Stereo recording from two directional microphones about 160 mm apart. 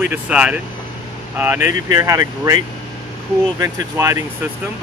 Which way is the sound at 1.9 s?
20° right (ahead or behind).